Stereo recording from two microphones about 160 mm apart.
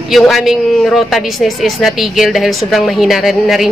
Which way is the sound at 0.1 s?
Centre (ahead or behind).